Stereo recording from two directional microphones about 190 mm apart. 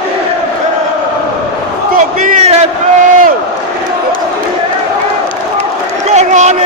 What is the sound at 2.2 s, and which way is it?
Speech, 40° right (ahead or behind).